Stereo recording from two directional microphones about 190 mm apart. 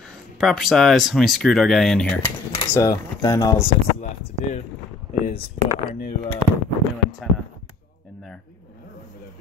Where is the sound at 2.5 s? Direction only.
15° left (ahead or behind).